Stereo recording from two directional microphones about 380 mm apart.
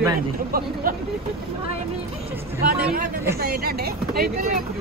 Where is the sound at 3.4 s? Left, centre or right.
Right.